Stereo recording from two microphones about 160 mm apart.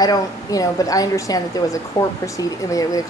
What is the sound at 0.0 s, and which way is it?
A woman's voice, 25° left (ahead or behind).